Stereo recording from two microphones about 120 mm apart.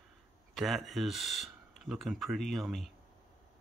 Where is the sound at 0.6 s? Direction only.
Centre (ahead or behind).